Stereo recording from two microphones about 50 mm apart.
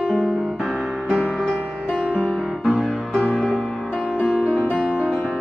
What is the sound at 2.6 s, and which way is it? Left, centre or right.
Music, right.